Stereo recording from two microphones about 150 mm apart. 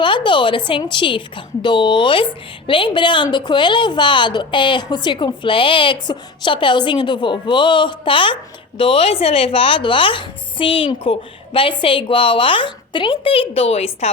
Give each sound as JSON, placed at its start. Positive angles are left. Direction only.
{"t": 0.0, "sound": "a woman's voice", "side_deg": 35}